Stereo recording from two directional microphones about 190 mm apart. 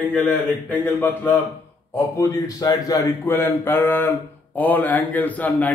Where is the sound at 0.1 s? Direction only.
10° left (ahead or behind).